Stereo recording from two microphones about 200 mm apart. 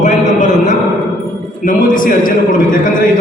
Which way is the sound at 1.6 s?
40° left (ahead or behind).